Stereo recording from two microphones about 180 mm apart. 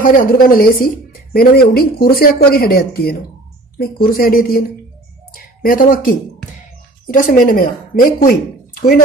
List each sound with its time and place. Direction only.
0.0 s speech: 50° left (ahead or behind)